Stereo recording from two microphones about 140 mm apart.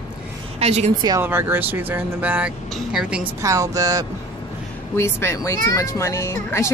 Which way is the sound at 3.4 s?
20° right (ahead or behind).